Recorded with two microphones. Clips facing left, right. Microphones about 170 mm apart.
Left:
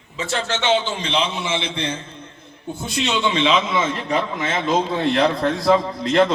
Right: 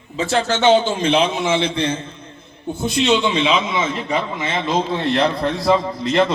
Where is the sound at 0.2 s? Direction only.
35° right (ahead or behind).